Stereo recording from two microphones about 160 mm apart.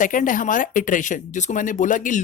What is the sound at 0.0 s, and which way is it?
Speech, 55° left (ahead or behind).